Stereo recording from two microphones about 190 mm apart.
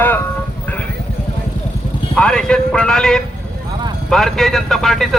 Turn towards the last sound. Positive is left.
turn(degrees=0)  # may be behind; listen again after turning